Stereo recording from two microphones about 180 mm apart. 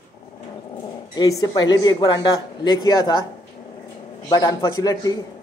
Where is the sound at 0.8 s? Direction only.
20° left (ahead or behind).